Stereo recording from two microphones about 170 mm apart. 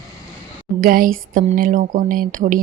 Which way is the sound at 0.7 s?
55° right (ahead or behind).